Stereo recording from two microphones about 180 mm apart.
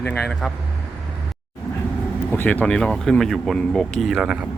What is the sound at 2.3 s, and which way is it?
Speech, 10° left (ahead or behind).